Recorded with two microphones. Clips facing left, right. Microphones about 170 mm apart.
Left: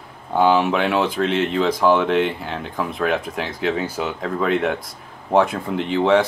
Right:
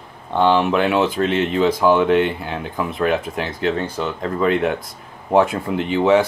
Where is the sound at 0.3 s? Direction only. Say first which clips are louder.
Even; 5° left (ahead or behind).